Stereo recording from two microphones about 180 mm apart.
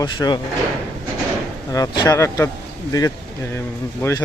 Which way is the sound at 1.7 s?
20° left (ahead or behind).